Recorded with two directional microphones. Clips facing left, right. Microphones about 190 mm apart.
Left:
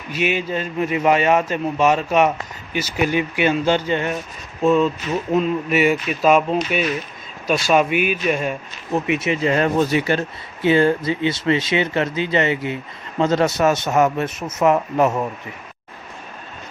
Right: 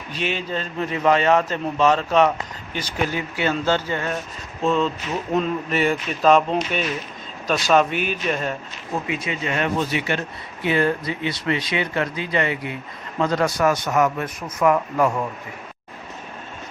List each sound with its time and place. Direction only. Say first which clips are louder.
0.1 s a man's voice: left 4 dB; 10° left (ahead or behind)
9.0 s speech: left 9 dB; 25° left (ahead or behind)